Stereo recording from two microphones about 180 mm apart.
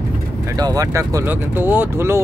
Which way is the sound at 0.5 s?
20° right (ahead or behind).